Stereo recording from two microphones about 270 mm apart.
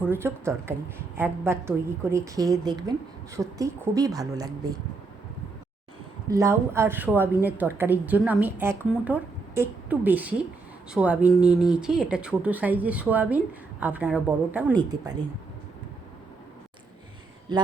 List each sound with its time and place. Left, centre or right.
0.0 s a woman's voice: centre
6.2 s a woman's voice: centre
17.5 s speech: centre